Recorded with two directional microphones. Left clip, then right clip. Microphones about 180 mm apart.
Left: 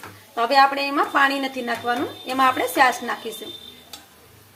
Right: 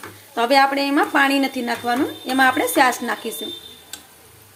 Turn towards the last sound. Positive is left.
turn(degrees=-20)  # may be behind; listen again after turning